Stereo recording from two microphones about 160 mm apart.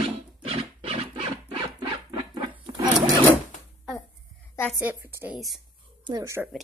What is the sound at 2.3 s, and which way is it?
Patter, 25° right (ahead or behind).